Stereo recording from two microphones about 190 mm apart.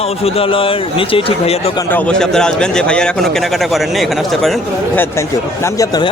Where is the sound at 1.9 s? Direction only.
5° left (ahead or behind).